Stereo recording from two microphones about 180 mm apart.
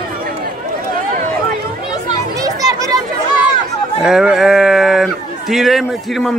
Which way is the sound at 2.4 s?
20° right (ahead or behind).